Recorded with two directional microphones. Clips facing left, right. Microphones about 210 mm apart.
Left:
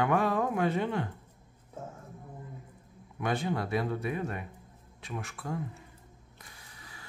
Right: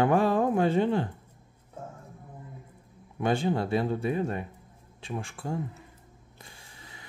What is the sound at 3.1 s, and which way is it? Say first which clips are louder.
A man's voice: right 5 dB; 30° right (ahead or behind).